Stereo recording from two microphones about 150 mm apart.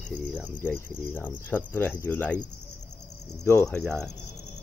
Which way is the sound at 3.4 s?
15° left (ahead or behind).